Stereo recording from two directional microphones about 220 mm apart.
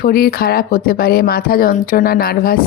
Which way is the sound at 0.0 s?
45° left (ahead or behind).